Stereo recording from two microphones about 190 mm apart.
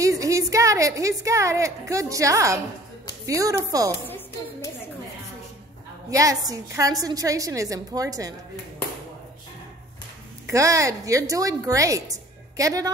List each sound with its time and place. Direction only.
0.0 s a woman's voice: 15° right (ahead or behind)
6.0 s a woman's voice: 15° right (ahead or behind)
10.4 s a woman's voice: 15° right (ahead or behind)